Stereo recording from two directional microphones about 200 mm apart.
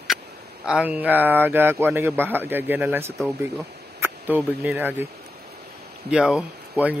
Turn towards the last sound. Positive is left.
turn(degrees=-5)  # may be behind; listen again after turning